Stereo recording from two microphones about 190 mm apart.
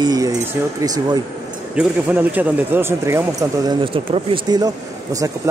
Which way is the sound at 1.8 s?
10° right (ahead or behind).